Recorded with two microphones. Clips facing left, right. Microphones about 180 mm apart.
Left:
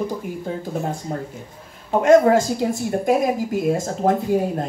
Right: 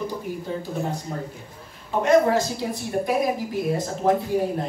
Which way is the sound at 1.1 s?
40° left (ahead or behind).